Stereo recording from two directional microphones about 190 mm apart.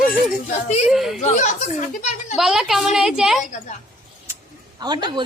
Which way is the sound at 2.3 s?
Centre (ahead or behind).